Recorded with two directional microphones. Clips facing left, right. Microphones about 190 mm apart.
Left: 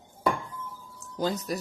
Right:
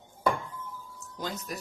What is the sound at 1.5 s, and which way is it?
Speech, 35° left (ahead or behind).